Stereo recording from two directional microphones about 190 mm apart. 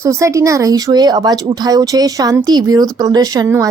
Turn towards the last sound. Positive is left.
turn(degrees=-20)  # may be behind; listen again after turning